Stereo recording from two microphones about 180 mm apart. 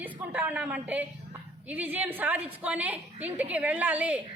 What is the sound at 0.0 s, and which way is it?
A woman's voice, 10° right (ahead or behind).